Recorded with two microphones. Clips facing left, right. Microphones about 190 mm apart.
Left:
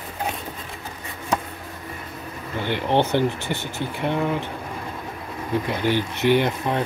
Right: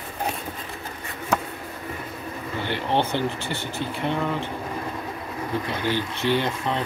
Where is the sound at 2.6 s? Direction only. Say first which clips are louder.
Left 3 dB; 15° left (ahead or behind).